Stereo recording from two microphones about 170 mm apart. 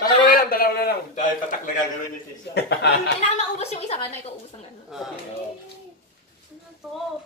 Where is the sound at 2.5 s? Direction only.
90° left.